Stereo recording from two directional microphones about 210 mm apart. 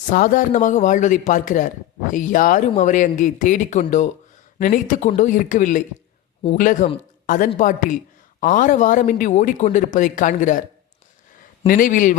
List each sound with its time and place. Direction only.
0.0 s a man's voice: 40° left (ahead or behind)
11.6 s a man's voice: 40° left (ahead or behind)